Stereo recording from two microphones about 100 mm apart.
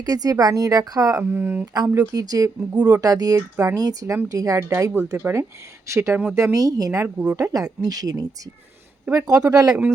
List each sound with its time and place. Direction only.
0.0 s a woman's voice: 40° right (ahead or behind)
1.2 s speech: 25° right (ahead or behind)
1.6 s a woman's voice: 40° right (ahead or behind)
2.6 s speech: 15° right (ahead or behind)
3.0 s a woman's voice: 40° right (ahead or behind)
3.3 s a woman's voice: 25° right (ahead or behind)